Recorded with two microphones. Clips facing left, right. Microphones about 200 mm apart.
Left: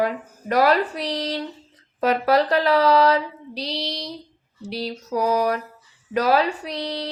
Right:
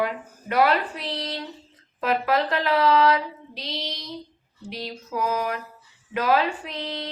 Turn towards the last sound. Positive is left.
turn(degrees=40)  # may be behind; listen again after turning